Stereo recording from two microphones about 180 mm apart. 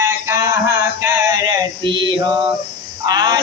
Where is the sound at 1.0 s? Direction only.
20° right (ahead or behind).